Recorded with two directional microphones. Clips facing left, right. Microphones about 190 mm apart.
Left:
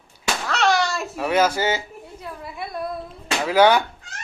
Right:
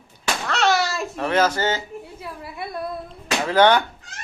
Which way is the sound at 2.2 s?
Centre (ahead or behind).